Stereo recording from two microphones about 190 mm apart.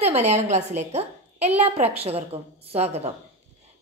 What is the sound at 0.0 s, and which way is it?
A woman's voice, 35° right (ahead or behind).